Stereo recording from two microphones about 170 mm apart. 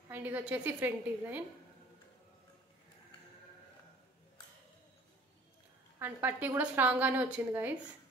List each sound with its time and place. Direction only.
0.1 s a woman's voice: 10° right (ahead or behind)
5.9 s a woman's voice: 10° right (ahead or behind)